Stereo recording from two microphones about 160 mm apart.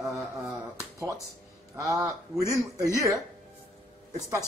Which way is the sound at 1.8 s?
20° right (ahead or behind).